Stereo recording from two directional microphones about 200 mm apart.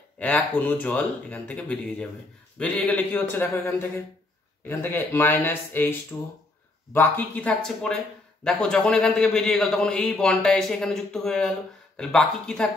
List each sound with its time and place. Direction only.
0.2 s a man's voice: 5° left (ahead or behind)